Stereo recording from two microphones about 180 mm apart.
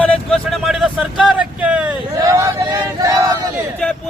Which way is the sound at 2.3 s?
15° right (ahead or behind).